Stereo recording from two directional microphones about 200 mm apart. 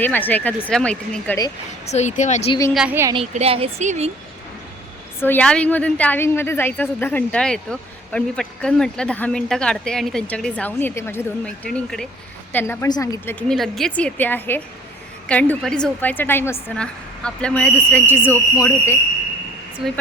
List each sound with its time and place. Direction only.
0.0 s a woman's voice: 10° left (ahead or behind)
1.9 s speech: 35° left (ahead or behind)
2.5 s a woman's voice: 15° left (ahead or behind)
2.7 s a woman's voice: 10° right (ahead or behind)
3.3 s speech: 30° right (ahead or behind)
5.2 s a woman's voice: 5° left (ahead or behind)
13.5 s a woman's voice: centre (ahead or behind)
19.8 s speech: centre (ahead or behind)